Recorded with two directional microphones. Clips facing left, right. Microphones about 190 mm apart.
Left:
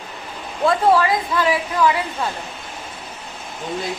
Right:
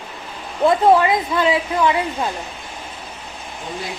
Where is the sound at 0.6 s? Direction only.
20° right (ahead or behind).